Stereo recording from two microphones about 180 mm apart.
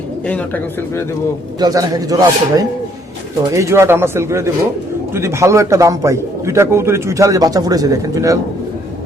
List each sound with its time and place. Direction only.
0.3 s speech: 10° left (ahead or behind)
1.5 s a man's voice: 20° right (ahead or behind)